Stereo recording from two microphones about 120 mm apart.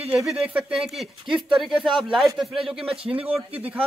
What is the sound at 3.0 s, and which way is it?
Speech, 50° right (ahead or behind).